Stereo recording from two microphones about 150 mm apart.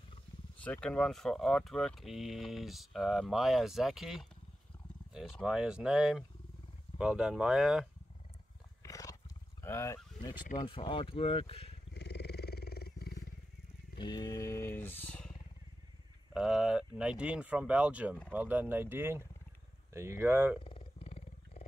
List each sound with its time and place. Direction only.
0.6 s speech: 10° left (ahead or behind)
8.8 s roaring cats: 25° left (ahead or behind)
9.6 s speech: 15° left (ahead or behind)
10.7 s speech: 35° left (ahead or behind)
11.9 s wild animals: 90° left
13.9 s speech: 30° left (ahead or behind); by 15.3 s 10° left (ahead or behind)
16.3 s speech: 5° right (ahead or behind)
21.0 s wild animals: 45° left (ahead or behind)